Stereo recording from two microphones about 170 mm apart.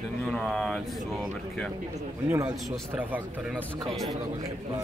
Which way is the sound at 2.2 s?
15° right (ahead or behind).